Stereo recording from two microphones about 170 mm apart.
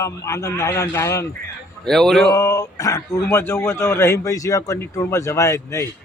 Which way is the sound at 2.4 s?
20° left (ahead or behind).